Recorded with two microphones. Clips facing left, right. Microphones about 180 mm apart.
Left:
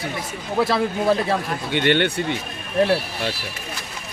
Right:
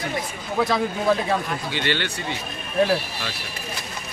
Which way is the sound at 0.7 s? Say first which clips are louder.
Left 1 dB; 30° left (ahead or behind).